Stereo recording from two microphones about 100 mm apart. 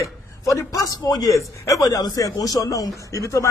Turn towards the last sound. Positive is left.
turn(degrees=30)  # may be behind; listen again after turning